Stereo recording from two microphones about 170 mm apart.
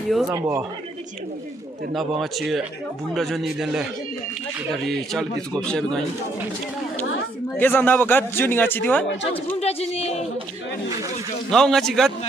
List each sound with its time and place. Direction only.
0.3 s speech: 20° right (ahead or behind)
2.0 s a man's voice: centre (ahead or behind)
4.8 s a man's voice: centre (ahead or behind)
7.5 s a man's voice: 10° left (ahead or behind)
9.6 s speech: 35° left (ahead or behind)
11.5 s a man's voice: 5° left (ahead or behind)